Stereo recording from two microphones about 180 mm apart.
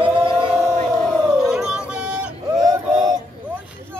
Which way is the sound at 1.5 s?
5° right (ahead or behind).